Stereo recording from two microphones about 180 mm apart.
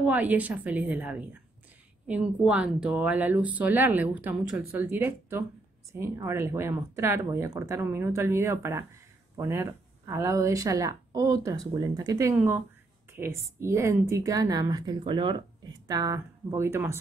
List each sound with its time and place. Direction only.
0.0 s a woman's voice: 10° right (ahead or behind)